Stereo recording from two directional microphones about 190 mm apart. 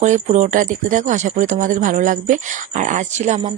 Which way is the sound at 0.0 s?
40° right (ahead or behind).